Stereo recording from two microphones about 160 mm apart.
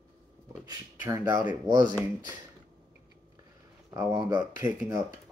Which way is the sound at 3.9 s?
20° right (ahead or behind).